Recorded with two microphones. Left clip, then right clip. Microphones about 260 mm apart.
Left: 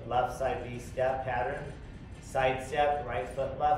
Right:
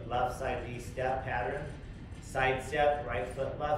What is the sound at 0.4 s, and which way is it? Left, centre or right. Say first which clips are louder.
Speech: left 3 dB; centre.